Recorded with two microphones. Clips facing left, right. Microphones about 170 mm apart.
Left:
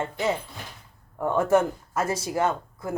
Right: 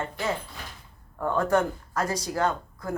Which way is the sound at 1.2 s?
25° left (ahead or behind).